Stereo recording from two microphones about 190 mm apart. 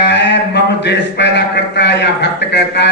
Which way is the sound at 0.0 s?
65° left (ahead or behind).